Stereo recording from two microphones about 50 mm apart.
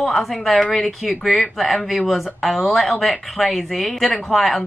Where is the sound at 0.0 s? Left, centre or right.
Centre.